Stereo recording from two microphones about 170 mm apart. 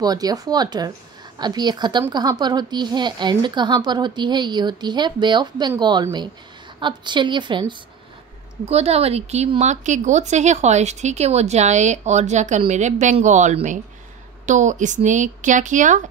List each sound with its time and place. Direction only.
0.0 s a woman's voice: 20° right (ahead or behind); by 16.0 s 50° right (ahead or behind)